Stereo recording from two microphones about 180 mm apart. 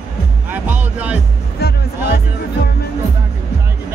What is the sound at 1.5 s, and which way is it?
Music, 60° left (ahead or behind).